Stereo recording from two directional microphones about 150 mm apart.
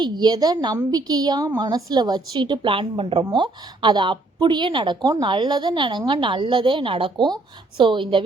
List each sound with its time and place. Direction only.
0.0 s a woman's voice: 30° right (ahead or behind)